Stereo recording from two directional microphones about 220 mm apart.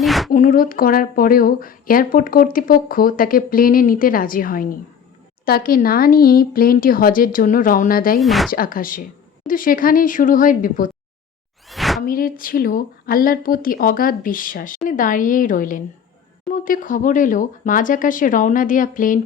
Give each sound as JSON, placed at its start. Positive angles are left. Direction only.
{"t": 0.0, "sound": "a sound", "side_deg": 0}
{"t": 0.3, "sound": "speech", "side_deg": 40}
{"t": 8.2, "sound": "speech", "side_deg": 0}
{"t": 8.4, "sound": "speech", "side_deg": 40}
{"t": 11.7, "sound": "a sound", "side_deg": 0}
{"t": 12.0, "sound": "speech", "side_deg": 40}